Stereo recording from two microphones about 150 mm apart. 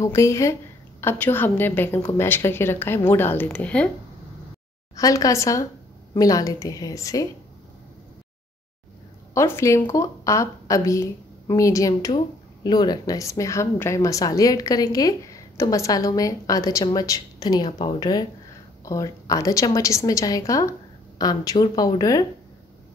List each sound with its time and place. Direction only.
0.0 s a woman's voice: 20° left (ahead or behind)
4.9 s a woman's voice: 20° left (ahead or behind)
9.3 s a woman's voice: 20° left (ahead or behind)